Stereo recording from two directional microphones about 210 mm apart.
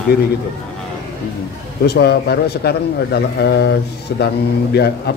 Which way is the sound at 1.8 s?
50° left (ahead or behind).